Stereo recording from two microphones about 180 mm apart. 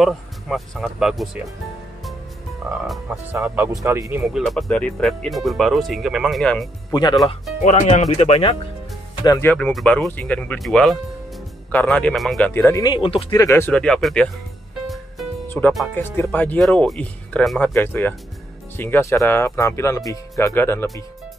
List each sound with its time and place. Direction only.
0.0 s speech: centre (ahead or behind)
2.6 s speech: 10° right (ahead or behind)
4.2 s speech: centre (ahead or behind)
6.9 s speech: 25° left (ahead or behind)
7.6 s speech: 40° left (ahead or behind)
9.2 s speech: 20° left (ahead or behind)
9.5 s speech: 5° left (ahead or behind); by 13.3 s 30° left (ahead or behind)
13.3 s speech: 15° left (ahead or behind)
15.4 s music: 10° left (ahead or behind)
16.0 s speech: 10° left (ahead or behind)